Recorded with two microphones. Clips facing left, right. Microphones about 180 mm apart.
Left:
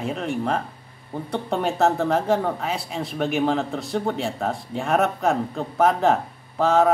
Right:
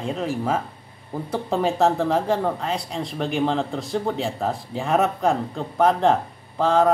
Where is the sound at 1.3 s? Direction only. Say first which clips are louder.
Right 2 dB; centre (ahead or behind).